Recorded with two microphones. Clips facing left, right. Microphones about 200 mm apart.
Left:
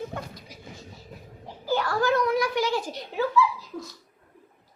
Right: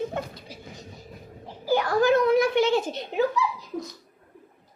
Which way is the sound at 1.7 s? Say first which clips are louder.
Right 4 dB; 15° right (ahead or behind).